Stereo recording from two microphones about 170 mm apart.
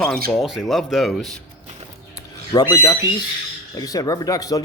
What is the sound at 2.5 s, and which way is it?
Speech, 25° left (ahead or behind).